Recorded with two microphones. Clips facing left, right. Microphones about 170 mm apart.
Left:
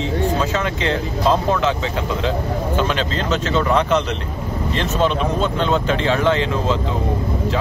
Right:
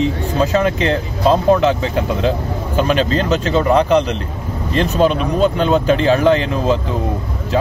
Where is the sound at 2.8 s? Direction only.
40° right (ahead or behind).